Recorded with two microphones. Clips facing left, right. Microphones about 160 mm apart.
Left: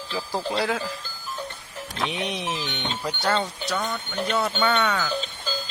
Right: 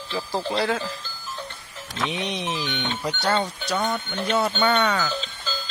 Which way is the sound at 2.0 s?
Centre (ahead or behind).